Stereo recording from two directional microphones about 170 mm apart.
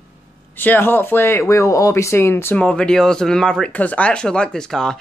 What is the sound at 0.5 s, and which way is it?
Speech, 10° left (ahead or behind).